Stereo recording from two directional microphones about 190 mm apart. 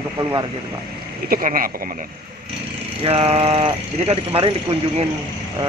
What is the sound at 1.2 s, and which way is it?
Speech, 50° right (ahead or behind).